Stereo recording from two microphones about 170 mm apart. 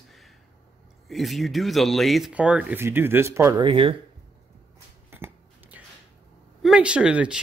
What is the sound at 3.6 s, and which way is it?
Speech, 30° right (ahead or behind).